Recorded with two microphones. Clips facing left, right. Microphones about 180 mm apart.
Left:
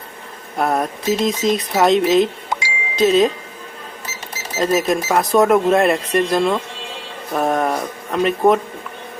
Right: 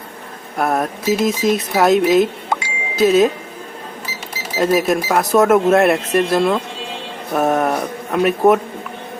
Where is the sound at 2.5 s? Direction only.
55° right (ahead or behind).